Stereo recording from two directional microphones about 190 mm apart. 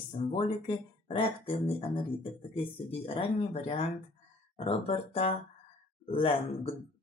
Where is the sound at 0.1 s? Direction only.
35° left (ahead or behind).